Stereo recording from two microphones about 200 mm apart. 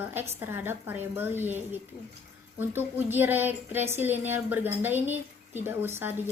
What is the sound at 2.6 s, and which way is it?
A woman's voice, 10° right (ahead or behind).